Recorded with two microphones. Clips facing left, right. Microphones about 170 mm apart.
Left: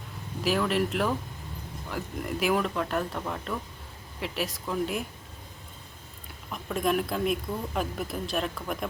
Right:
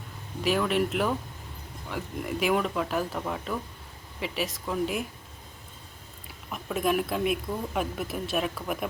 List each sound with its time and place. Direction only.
0.4 s speech: centre (ahead or behind)
6.2 s speech: centre (ahead or behind)